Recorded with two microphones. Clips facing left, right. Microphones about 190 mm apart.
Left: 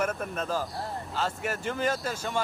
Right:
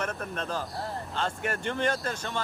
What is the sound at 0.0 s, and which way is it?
Speech, 5° left (ahead or behind).